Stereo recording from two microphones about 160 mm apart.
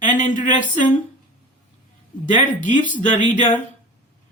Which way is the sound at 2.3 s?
55° left (ahead or behind).